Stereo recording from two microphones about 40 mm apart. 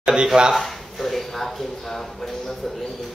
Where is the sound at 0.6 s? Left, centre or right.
Centre.